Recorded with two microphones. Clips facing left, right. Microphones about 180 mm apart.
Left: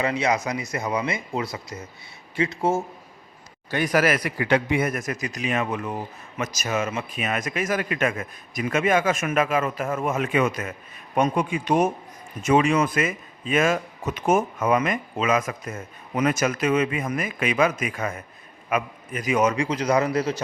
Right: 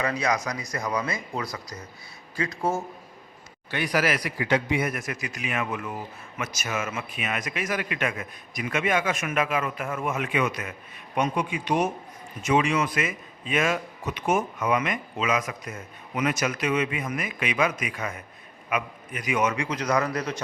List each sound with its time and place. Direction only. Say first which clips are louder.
0.0 s speech: left 3 dB; 25° left (ahead or behind)
3.7 s a man's voice: left 4 dB; 45° left (ahead or behind); by 20.3 s 30° left (ahead or behind)